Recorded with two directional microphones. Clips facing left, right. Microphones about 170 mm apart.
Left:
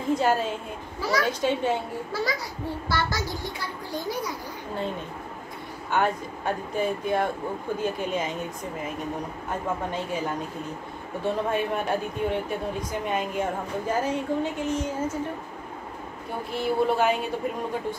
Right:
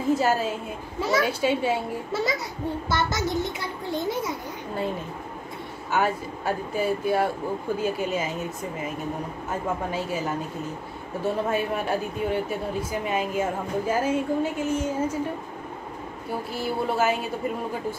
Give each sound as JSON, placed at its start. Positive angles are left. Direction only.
{"t": 0.1, "sound": "a woman's voice", "side_deg": -5}
{"t": 2.1, "sound": "a child's voice", "side_deg": -20}
{"t": 5.9, "sound": "speech", "side_deg": -5}
{"t": 16.5, "sound": "speech", "side_deg": 0}